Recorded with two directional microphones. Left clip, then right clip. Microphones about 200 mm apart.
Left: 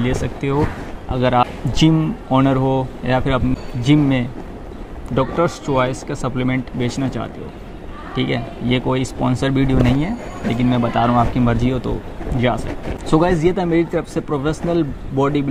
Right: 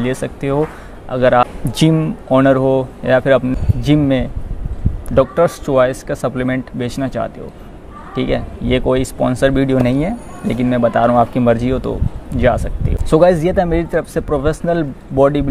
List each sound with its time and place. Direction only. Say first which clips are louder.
0.0 s speech: right 2 dB; 50° right (ahead or behind)
13.1 s speech: right 5 dB; 50° right (ahead or behind)